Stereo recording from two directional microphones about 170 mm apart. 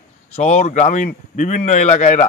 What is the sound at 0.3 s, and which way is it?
Speech, 45° left (ahead or behind).